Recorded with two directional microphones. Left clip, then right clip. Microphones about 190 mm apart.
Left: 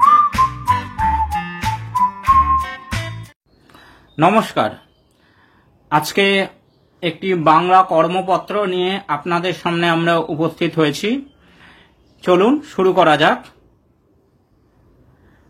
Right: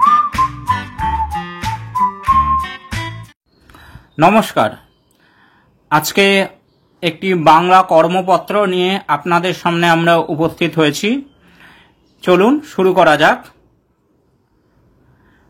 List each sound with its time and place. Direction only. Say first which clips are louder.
0.0 s whistling: even; centre (ahead or behind)
1.6 s music: right 1 dB; centre (ahead or behind)
3.6 s a sound: right 3 dB; 20° right (ahead or behind)
5.9 s speech: right 3 dB; 20° right (ahead or behind)